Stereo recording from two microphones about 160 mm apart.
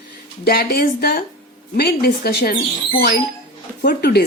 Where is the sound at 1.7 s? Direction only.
80° left.